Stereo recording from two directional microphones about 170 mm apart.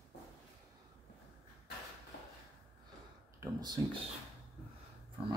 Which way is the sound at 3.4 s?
25° right (ahead or behind).